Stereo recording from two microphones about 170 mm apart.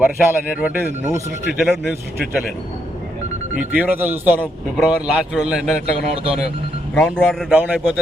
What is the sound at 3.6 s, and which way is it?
A man's voice, 5° right (ahead or behind).